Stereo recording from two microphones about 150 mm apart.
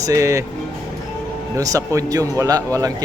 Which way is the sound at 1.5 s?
20° right (ahead or behind).